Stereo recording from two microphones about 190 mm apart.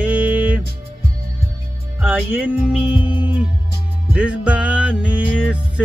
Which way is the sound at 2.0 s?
10° right (ahead or behind).